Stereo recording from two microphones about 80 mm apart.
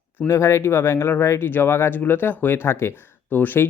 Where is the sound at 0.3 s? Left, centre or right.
Left.